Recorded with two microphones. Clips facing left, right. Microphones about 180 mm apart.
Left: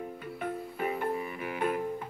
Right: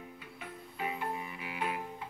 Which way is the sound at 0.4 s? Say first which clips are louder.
Left 7 dB; 50° left (ahead or behind).